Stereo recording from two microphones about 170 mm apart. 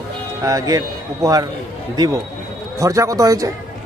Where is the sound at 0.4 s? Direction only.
20° right (ahead or behind).